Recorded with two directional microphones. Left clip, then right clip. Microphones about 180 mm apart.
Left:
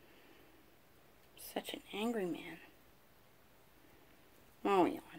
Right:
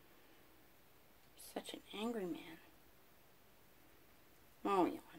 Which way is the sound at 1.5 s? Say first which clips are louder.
Left 5 dB; 25° left (ahead or behind).